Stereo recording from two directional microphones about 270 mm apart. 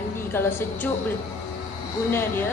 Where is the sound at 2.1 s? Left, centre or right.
Centre.